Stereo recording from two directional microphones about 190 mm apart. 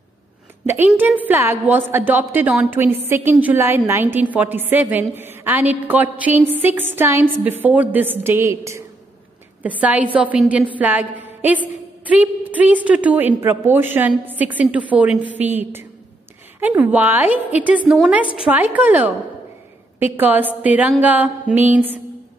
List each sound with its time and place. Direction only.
0.7 s a woman's voice: 10° right (ahead or behind)